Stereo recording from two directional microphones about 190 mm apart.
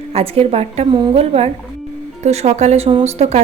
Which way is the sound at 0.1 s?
30° right (ahead or behind).